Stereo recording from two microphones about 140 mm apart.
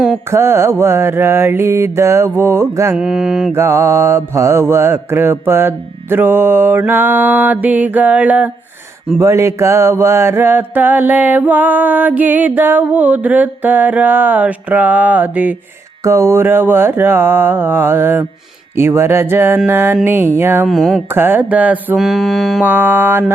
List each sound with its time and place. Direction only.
0.3 s mantra: 20° right (ahead or behind)
2.9 s mantra: 5° right (ahead or behind)
3.5 s mantra: 20° right (ahead or behind)
20.7 s mantra: centre (ahead or behind)
21.1 s mantra: 15° right (ahead or behind); by 22.6 s centre (ahead or behind)
22.6 s mantra: 15° right (ahead or behind)